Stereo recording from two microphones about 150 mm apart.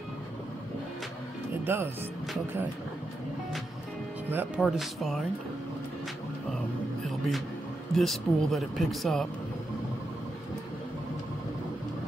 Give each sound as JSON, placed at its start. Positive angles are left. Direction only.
{"t": 1.6, "sound": "speech", "side_deg": -15}
{"t": 4.3, "sound": "speech", "side_deg": -15}
{"t": 4.6, "sound": "speech", "side_deg": 0}
{"t": 7.1, "sound": "a sound", "side_deg": 0}
{"t": 7.9, "sound": "speech", "side_deg": 0}